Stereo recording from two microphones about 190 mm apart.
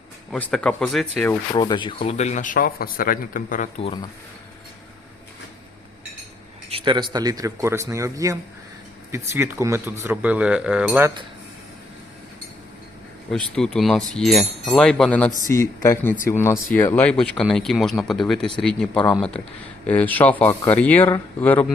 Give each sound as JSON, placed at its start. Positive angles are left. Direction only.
{"t": 0.3, "sound": "speech", "side_deg": 5}
{"t": 1.5, "sound": "speech", "side_deg": 25}
{"t": 2.0, "sound": "a man's voice", "side_deg": 35}
{"t": 3.8, "sound": "speech", "side_deg": 25}
{"t": 6.7, "sound": "speech", "side_deg": -25}
{"t": 13.3, "sound": "speech", "side_deg": 5}
{"t": 15.4, "sound": "speech", "side_deg": 15}
{"t": 19.9, "sound": "speech", "side_deg": 10}